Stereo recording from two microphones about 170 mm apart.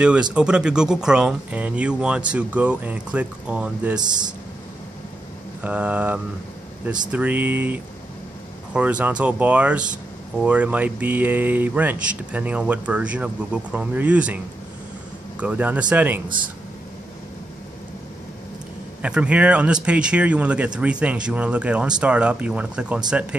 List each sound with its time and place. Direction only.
0.0 s speech: 5° right (ahead or behind)
5.6 s speech: 10° right (ahead or behind)
18.9 s speech: 5° right (ahead or behind)